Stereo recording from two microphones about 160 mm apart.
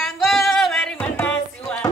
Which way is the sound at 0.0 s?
Centre (ahead or behind).